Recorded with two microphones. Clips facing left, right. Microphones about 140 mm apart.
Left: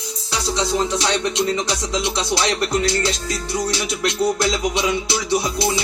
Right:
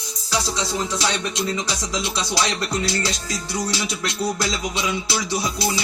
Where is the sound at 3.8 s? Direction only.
25° left (ahead or behind).